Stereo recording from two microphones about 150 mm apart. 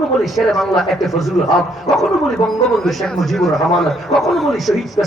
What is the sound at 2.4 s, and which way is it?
Speech, 30° left (ahead or behind).